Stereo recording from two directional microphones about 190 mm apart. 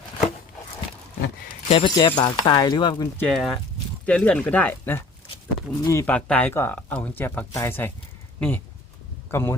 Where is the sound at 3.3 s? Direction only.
Centre (ahead or behind).